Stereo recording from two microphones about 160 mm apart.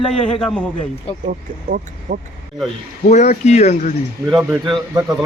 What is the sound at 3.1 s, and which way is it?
Speech, 45° left (ahead or behind).